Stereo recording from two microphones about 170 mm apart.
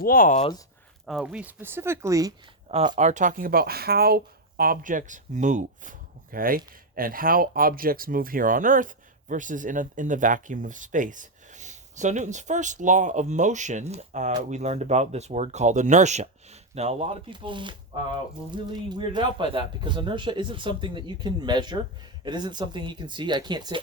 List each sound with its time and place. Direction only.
0.0 s speech: 55° left (ahead or behind)
1.0 s speech: 5° right (ahead or behind); by 2.3 s 20° right (ahead or behind)
2.6 s speech: 40° right (ahead or behind)
6.3 s speech: 55° right (ahead or behind); by 23.8 s 25° right (ahead or behind)